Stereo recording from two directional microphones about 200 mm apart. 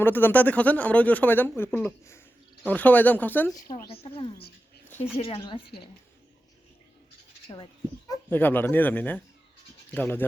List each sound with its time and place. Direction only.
0.0 s speech: 10° left (ahead or behind)
3.7 s speech: 45° left (ahead or behind)
3.9 s speech: 25° left (ahead or behind)
7.5 s speech: 20° left (ahead or behind)